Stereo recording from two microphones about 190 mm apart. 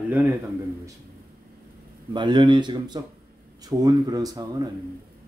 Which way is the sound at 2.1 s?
25° right (ahead or behind).